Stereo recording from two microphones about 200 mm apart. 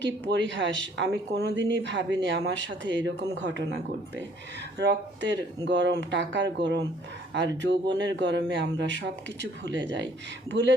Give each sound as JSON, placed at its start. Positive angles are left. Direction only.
{"t": 0.0, "sound": "speech", "side_deg": -65}